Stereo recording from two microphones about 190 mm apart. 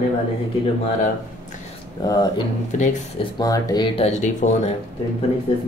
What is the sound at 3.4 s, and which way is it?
Speech, 20° left (ahead or behind).